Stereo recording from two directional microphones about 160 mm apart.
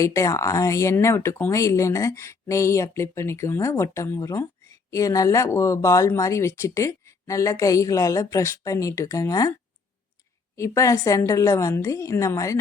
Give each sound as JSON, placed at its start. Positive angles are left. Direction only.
{"t": 0.0, "sound": "speech", "side_deg": 20}
{"t": 10.6, "sound": "speech", "side_deg": 20}